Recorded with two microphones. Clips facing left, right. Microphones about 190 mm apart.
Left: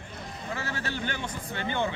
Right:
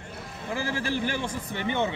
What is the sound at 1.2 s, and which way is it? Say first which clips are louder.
Speech: right 3 dB; 25° right (ahead or behind).